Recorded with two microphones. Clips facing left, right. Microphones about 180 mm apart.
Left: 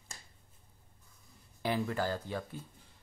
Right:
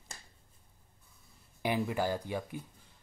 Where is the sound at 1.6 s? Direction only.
15° right (ahead or behind).